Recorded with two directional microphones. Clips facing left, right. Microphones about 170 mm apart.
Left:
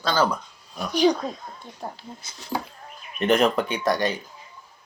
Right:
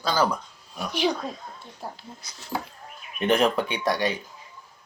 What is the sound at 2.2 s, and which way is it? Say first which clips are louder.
Speech: left 1 dB; 25° left (ahead or behind).